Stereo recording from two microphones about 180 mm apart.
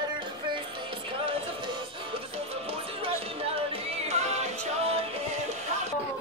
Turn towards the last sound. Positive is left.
turn(degrees=-35)  # may be behind; listen again after turning